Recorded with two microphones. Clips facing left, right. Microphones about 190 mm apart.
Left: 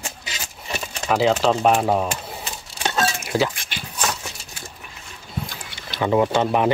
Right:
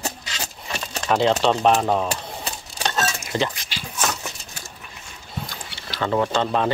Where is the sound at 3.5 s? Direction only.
55° left (ahead or behind).